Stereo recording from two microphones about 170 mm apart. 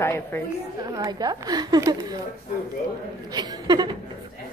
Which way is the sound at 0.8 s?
25° right (ahead or behind).